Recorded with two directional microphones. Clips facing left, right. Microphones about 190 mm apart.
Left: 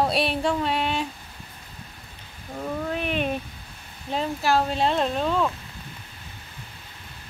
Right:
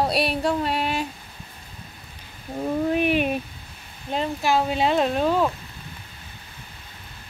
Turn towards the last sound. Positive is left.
turn(degrees=-5)  # may be behind; listen again after turning